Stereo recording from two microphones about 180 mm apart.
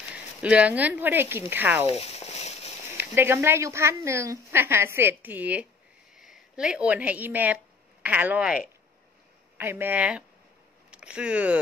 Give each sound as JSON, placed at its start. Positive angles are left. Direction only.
{"t": 0.1, "sound": "speech", "side_deg": -5}
{"t": 1.9, "sound": "a sound", "side_deg": 35}
{"t": 3.0, "sound": "speech", "side_deg": -10}
{"t": 9.6, "sound": "speech", "side_deg": -10}